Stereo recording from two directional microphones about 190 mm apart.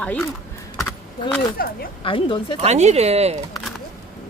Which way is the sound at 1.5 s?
50° left (ahead or behind).